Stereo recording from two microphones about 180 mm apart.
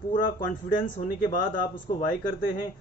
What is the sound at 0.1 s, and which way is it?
Speech, 50° left (ahead or behind).